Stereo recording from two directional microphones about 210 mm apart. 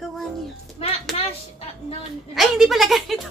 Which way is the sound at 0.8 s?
30° left (ahead or behind).